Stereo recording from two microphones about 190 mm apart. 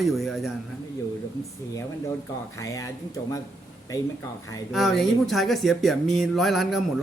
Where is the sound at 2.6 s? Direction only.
15° left (ahead or behind).